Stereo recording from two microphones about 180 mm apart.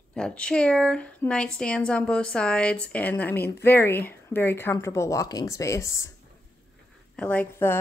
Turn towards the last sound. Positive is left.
turn(degrees=10)  # may be behind; listen again after turning